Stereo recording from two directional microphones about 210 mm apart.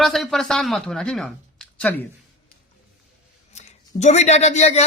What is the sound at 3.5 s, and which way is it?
A man's voice, 35° left (ahead or behind).